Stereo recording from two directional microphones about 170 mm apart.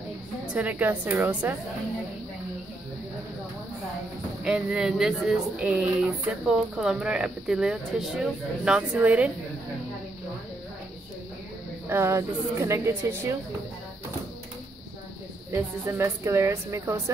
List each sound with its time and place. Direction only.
0.6 s speech: 10° right (ahead or behind)
4.5 s speech: 5° right (ahead or behind)
11.9 s speech: 15° right (ahead or behind)
15.5 s speech: 15° right (ahead or behind)